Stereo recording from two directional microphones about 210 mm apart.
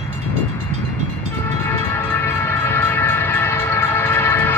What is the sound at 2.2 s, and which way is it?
Train, 10° left (ahead or behind).